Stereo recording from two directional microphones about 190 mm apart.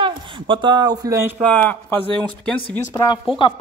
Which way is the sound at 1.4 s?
10° left (ahead or behind).